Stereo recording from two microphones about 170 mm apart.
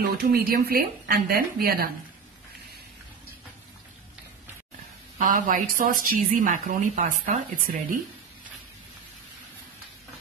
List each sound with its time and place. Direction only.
0.0 s speech: 60° right (ahead or behind)
5.2 s speech: 55° right (ahead or behind)